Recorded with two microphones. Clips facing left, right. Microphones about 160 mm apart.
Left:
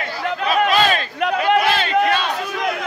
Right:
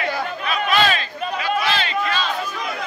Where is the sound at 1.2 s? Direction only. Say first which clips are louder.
Left 7 dB; 75° left (ahead or behind).